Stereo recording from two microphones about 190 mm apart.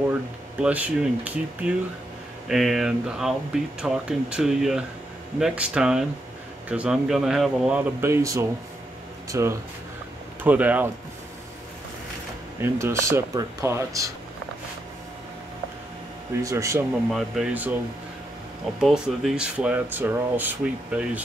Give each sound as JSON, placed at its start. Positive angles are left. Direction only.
{"t": 0.1, "sound": "speech", "side_deg": -5}
{"t": 12.6, "sound": "speech", "side_deg": -15}
{"t": 16.4, "sound": "speech", "side_deg": -15}
{"t": 18.8, "sound": "speech", "side_deg": 0}